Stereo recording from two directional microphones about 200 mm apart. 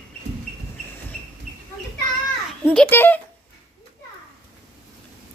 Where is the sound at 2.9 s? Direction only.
10° left (ahead or behind).